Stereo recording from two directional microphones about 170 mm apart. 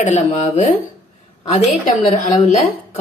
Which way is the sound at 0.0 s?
45° left (ahead or behind).